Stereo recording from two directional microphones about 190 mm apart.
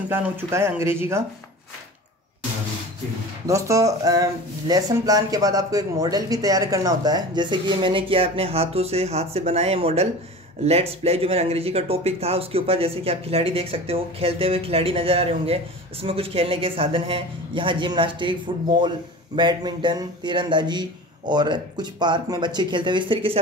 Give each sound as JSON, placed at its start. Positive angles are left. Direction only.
{"t": 0.1, "sound": "speech", "side_deg": -15}
{"t": 3.4, "sound": "speech", "side_deg": -15}